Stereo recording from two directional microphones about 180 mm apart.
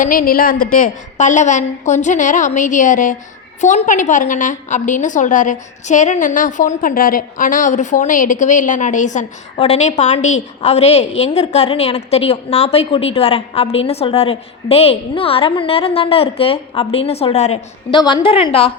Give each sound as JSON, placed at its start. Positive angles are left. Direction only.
{"t": 0.0, "sound": "a woman's voice", "side_deg": 50}
{"t": 17.9, "sound": "a woman's voice", "side_deg": 25}